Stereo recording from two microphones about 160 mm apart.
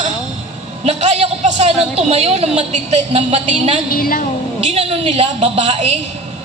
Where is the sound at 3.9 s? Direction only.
65° left (ahead or behind).